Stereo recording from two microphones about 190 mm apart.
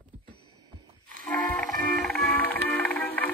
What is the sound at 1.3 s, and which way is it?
Music, 5° left (ahead or behind).